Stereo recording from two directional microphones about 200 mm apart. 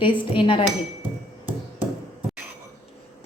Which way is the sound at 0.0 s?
25° left (ahead or behind).